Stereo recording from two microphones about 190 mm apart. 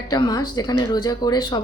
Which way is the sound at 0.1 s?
20° left (ahead or behind).